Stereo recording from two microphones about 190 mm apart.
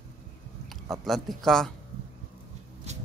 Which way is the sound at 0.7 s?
Centre (ahead or behind).